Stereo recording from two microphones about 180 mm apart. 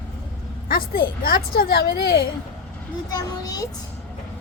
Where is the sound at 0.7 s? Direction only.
55° left (ahead or behind).